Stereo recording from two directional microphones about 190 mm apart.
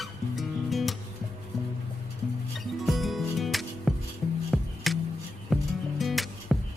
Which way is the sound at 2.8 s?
Centre (ahead or behind).